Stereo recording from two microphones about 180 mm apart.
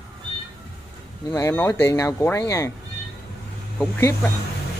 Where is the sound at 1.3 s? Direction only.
15° left (ahead or behind).